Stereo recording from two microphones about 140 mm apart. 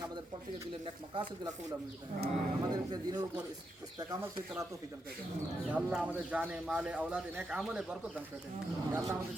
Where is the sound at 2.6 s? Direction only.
30° right (ahead or behind).